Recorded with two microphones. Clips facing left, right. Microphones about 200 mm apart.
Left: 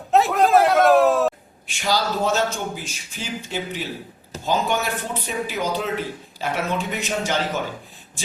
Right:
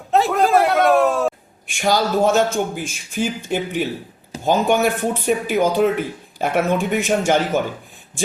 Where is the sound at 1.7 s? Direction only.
50° right (ahead or behind).